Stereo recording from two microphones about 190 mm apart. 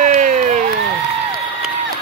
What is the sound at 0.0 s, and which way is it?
Crowd, 40° right (ahead or behind).